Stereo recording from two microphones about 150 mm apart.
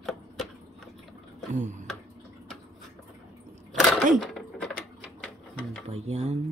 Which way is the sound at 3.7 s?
Centre (ahead or behind).